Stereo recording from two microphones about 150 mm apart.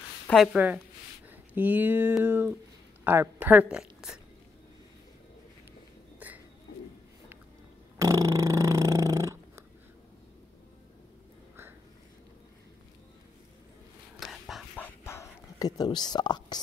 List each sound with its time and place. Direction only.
0.3 s a woman's voice: centre (ahead or behind)
1.3 s speech: 10° right (ahead or behind)
6.1 s a sound: 10° right (ahead or behind)
8.0 s dog: 20° right (ahead or behind)
14.2 s a sound: centre (ahead or behind)
14.8 s whispering: 20° left (ahead or behind)